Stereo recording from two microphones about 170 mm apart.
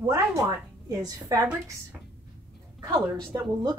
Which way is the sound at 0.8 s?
20° right (ahead or behind).